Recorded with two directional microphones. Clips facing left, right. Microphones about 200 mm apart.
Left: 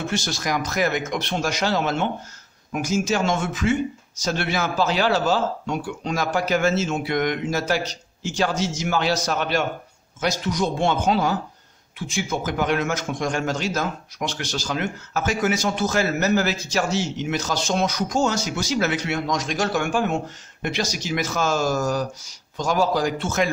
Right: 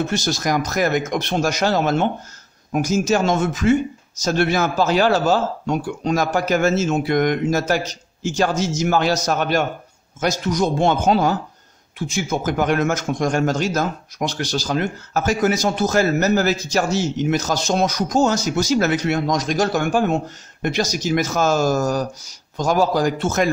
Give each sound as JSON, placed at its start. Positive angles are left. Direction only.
{"t": 0.1, "sound": "a man's voice", "side_deg": -40}